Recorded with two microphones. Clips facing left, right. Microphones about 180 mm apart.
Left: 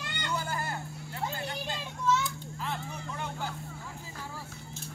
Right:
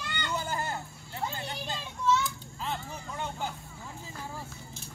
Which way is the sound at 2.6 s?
20° right (ahead or behind).